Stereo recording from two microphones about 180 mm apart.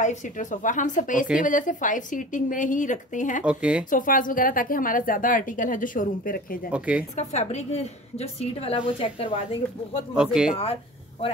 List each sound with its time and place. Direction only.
0.0 s a woman's voice: 45° left (ahead or behind)
3.4 s speech: 5° right (ahead or behind)
3.9 s a woman's voice: 50° left (ahead or behind)
6.7 s speech: 5° right (ahead or behind)
7.2 s a woman's voice: 40° left (ahead or behind)
10.1 s speech: 5° right (ahead or behind)
10.6 s speech: 30° left (ahead or behind)